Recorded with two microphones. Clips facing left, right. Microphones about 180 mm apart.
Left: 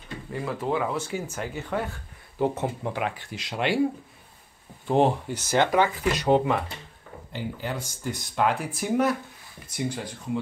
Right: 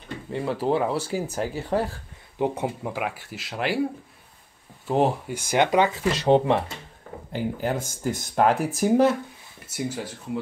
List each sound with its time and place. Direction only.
0.3 s speech: 30° right (ahead or behind)
2.3 s speech: 15° right (ahead or behind)
4.8 s speech: 5° right (ahead or behind); by 6.6 s 25° right (ahead or behind)
7.3 s speech: 45° right (ahead or behind)
9.7 s speech: 5° right (ahead or behind)